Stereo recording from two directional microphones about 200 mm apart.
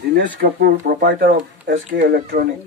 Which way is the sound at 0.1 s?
45° right (ahead or behind).